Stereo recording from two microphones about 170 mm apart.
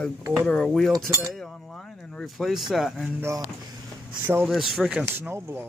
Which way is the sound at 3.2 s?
15° right (ahead or behind).